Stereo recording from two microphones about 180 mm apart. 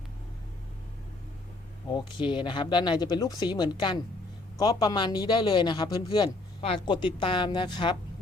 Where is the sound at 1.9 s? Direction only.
25° left (ahead or behind).